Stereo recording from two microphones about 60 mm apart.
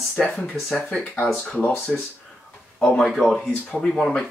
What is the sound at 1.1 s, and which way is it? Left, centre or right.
Speech, left.